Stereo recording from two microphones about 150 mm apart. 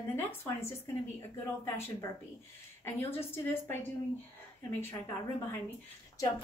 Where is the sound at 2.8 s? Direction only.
15° left (ahead or behind).